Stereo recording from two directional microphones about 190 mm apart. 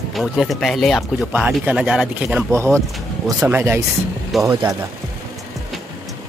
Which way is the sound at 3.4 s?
10° right (ahead or behind).